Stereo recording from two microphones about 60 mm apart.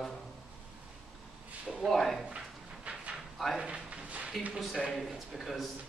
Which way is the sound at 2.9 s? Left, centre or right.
Right.